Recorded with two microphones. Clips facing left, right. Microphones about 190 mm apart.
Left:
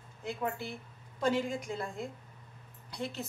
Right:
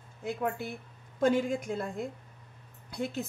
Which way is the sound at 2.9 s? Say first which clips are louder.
Right 4 dB; 50° right (ahead or behind).